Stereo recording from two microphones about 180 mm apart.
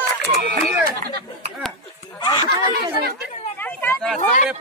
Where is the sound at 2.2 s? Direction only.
25° left (ahead or behind).